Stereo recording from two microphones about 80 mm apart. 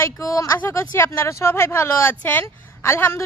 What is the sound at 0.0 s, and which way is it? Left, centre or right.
Speech, left.